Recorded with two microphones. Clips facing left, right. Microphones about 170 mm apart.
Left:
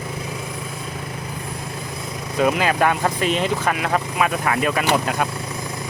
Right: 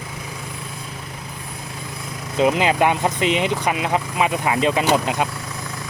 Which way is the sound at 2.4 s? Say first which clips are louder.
Right 1 dB; 20° right (ahead or behind).